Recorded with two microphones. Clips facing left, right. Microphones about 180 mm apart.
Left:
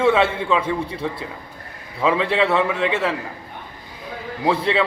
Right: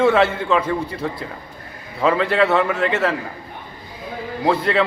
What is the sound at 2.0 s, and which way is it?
Speech, centre (ahead or behind).